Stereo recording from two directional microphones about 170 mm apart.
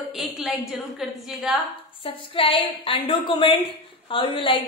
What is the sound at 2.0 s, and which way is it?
A woman's voice, 30° left (ahead or behind).